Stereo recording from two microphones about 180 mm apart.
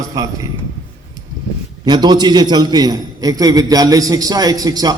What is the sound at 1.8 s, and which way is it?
A man's voice, 25° right (ahead or behind).